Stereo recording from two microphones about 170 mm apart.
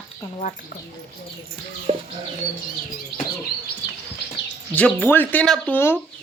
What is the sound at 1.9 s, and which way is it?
Bird, 40° right (ahead or behind).